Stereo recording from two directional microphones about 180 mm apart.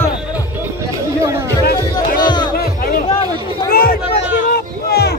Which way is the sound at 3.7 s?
55° left (ahead or behind).